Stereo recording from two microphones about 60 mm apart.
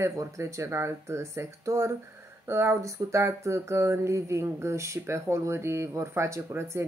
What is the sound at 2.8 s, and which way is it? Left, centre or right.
Speech, right.